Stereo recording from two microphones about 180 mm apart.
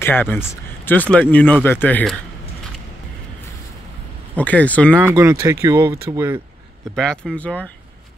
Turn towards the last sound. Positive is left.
turn(degrees=5)  # may be behind; listen again after turning